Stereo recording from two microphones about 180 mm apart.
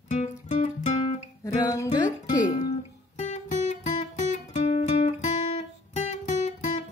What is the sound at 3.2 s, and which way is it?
Music, 40° left (ahead or behind).